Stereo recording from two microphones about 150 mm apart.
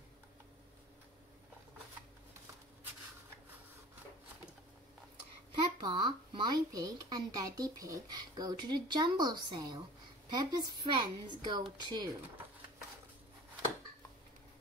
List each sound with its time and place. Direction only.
5.8 s speech: 30° right (ahead or behind)